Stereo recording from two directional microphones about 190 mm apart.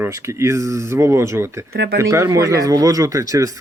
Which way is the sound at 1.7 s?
55° right (ahead or behind).